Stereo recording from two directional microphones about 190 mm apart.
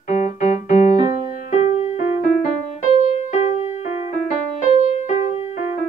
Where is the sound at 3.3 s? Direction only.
35° left (ahead or behind).